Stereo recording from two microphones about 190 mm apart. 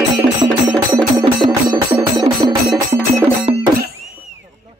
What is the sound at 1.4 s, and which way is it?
Music, 25° right (ahead or behind).